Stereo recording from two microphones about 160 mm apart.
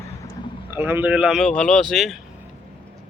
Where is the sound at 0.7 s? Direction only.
15° right (ahead or behind).